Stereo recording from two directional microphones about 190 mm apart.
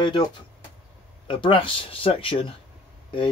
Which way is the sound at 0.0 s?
25° left (ahead or behind).